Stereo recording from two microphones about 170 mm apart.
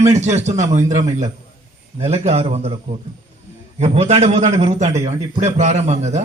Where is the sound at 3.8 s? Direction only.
40° right (ahead or behind).